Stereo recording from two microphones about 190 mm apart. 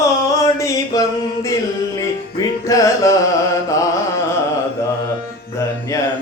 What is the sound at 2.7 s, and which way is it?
Music, 15° left (ahead or behind).